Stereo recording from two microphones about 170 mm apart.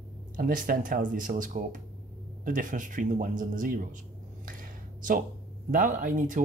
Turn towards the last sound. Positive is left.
turn(degrees=-50)  # may be behind; listen again after turning